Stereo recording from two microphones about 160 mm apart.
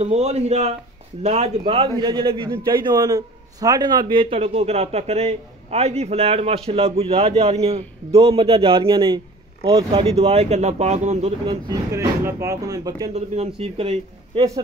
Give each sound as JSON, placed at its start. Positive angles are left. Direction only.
{"t": 0.0, "sound": "speech", "side_deg": -40}
{"t": 1.9, "sound": "a man's voice", "side_deg": -25}
{"t": 11.4, "sound": "speech", "side_deg": -20}
{"t": 13.1, "sound": "speech", "side_deg": -45}